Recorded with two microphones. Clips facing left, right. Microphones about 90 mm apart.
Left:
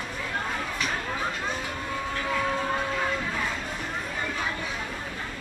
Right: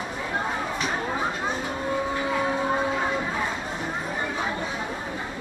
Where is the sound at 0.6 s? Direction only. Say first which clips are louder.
Right 3 dB; 20° right (ahead or behind).